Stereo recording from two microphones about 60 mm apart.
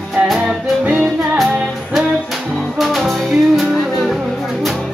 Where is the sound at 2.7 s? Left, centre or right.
Centre.